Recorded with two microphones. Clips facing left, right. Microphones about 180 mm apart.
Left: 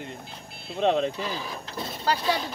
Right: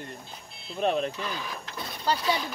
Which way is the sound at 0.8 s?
90° left.